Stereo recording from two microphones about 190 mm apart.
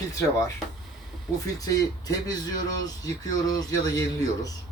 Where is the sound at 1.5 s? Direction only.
20° left (ahead or behind).